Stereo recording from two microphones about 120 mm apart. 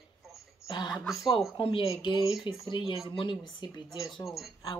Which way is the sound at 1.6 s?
50° left (ahead or behind).